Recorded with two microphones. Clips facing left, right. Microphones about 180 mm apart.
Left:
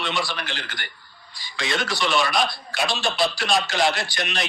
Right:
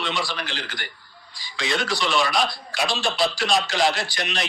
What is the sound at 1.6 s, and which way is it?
Speech, centre (ahead or behind).